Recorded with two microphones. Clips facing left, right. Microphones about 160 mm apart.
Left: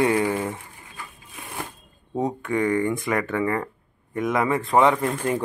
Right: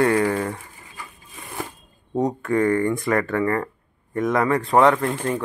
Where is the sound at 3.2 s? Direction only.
10° left (ahead or behind).